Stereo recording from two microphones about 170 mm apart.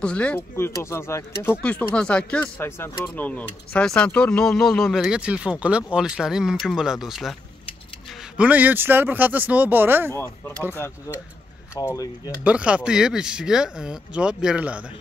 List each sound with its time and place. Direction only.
0.0 s speech: 5° left (ahead or behind)
8.4 s speech: 10° right (ahead or behind)
10.1 s speech: 15° left (ahead or behind)
12.4 s speech: 5° right (ahead or behind)